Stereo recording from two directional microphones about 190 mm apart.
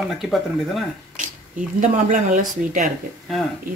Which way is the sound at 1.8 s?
40° right (ahead or behind).